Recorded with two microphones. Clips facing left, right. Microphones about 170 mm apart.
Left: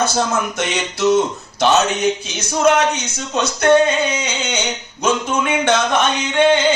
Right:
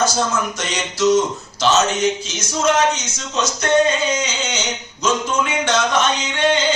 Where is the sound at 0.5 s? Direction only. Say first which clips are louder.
Left 4 dB; 60° left (ahead or behind).